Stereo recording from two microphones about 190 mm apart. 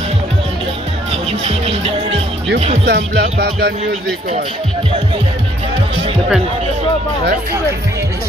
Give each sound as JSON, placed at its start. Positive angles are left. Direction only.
{"t": 1.4, "sound": "music", "side_deg": -30}
{"t": 2.8, "sound": "music", "side_deg": -60}